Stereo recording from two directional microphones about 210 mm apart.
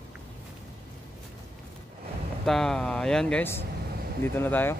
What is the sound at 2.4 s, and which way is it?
Vehicle, centre (ahead or behind).